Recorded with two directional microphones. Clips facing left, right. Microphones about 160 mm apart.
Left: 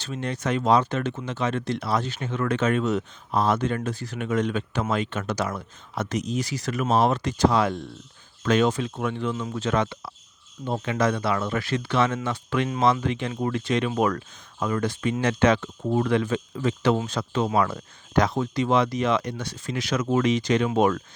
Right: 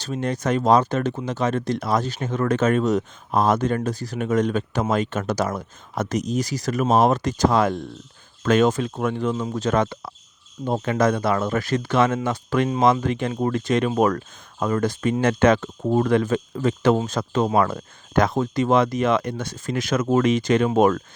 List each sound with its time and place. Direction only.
0.0 s speech: 40° right (ahead or behind)